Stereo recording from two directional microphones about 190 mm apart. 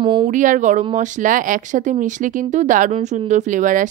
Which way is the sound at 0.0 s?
25° right (ahead or behind).